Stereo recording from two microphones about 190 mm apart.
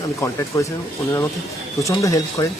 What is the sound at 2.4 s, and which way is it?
Speech, 20° left (ahead or behind).